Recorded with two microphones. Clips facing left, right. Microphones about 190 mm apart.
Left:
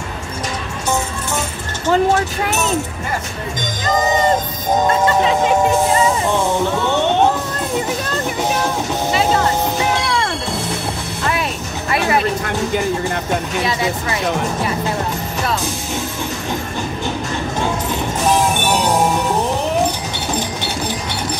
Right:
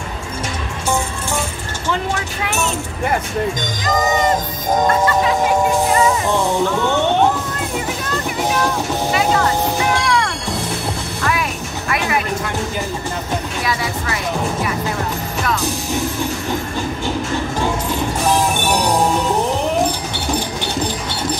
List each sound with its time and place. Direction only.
1.9 s vehicle: 40° left (ahead or behind)
4.8 s speech: 25° left (ahead or behind)
6.3 s music: 20° left (ahead or behind)
9.1 s music: 25° left (ahead or behind)
11.9 s a sound: 30° left (ahead or behind)
13.7 s speech: 20° left (ahead or behind)
18.3 s music: 20° left (ahead or behind)
18.6 s music: 15° right (ahead or behind)
20.3 s pigeon: 15° right (ahead or behind)